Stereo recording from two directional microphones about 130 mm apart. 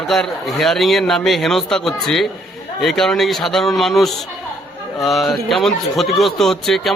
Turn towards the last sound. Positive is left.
turn(degrees=5)  # may be behind; listen again after turning